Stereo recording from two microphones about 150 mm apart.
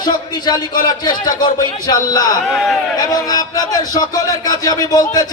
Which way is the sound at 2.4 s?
Centre (ahead or behind).